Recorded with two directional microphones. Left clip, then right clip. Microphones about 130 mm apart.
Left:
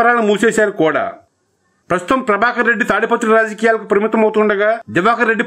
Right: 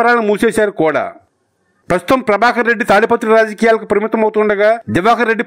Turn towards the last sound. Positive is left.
turn(degrees=-45)  # may be behind; listen again after turning